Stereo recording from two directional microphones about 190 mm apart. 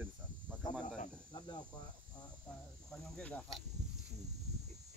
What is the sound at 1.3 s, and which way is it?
Cricket, 20° left (ahead or behind).